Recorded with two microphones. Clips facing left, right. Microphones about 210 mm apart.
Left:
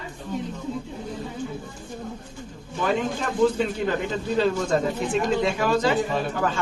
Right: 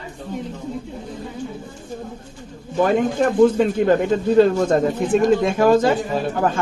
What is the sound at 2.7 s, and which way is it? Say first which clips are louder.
Speech: right 7 dB; 55° right (ahead or behind).